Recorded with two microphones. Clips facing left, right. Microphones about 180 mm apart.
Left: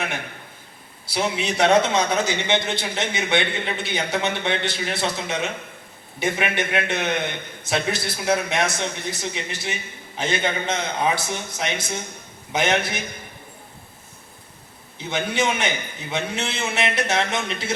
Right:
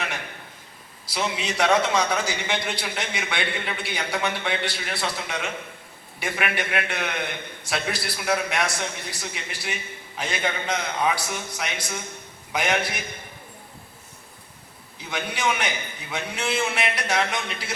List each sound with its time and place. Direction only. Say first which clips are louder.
1.0 s a man's voice: left 3 dB; 30° left (ahead or behind)
14.9 s a man's voice: left 7 dB; 25° left (ahead or behind)